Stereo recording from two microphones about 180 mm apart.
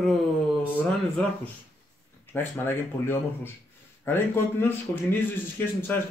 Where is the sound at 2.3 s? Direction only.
10° left (ahead or behind).